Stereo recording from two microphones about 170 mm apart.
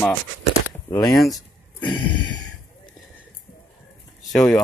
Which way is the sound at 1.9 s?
30° left (ahead or behind).